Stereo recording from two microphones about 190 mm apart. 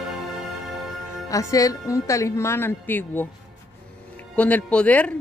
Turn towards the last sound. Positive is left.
turn(degrees=5)  # may be behind; listen again after turning